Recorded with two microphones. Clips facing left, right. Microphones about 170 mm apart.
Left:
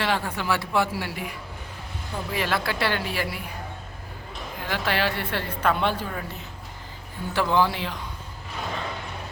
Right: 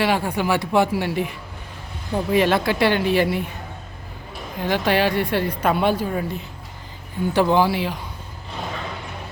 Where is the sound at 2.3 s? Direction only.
20° right (ahead or behind).